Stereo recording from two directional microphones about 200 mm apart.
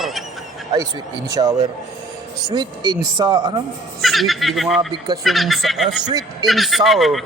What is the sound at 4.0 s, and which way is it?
Speech, centre (ahead or behind).